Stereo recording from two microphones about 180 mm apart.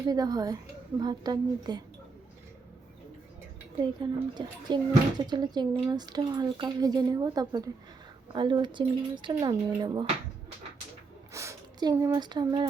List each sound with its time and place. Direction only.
0.1 s speech: 20° right (ahead or behind)
4.0 s speech: 25° right (ahead or behind)
11.3 s speech: 15° right (ahead or behind)